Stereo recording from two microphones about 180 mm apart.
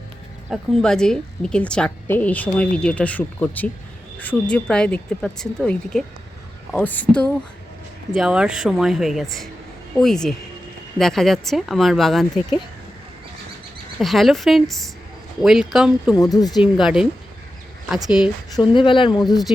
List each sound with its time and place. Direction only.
0.5 s a woman's voice: 5° left (ahead or behind)
14.0 s a woman's voice: centre (ahead or behind)
16.1 s speech: 20° left (ahead or behind)
16.8 s a woman's voice: centre (ahead or behind)
18.5 s speech: 25° left (ahead or behind)